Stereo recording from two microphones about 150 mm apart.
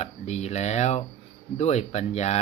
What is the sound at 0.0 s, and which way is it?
Speech, 50° left (ahead or behind).